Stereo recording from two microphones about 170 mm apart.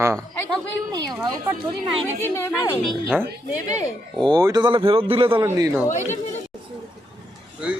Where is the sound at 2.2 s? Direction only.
15° left (ahead or behind).